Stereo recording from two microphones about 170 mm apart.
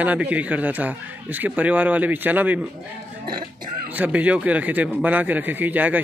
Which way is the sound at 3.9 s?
10° right (ahead or behind).